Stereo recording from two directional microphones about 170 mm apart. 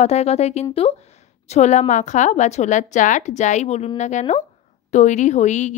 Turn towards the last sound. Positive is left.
turn(degrees=45)  # may be behind; listen again after turning